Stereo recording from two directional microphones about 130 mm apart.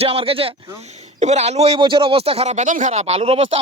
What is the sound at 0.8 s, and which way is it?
Speech, 60° right (ahead or behind).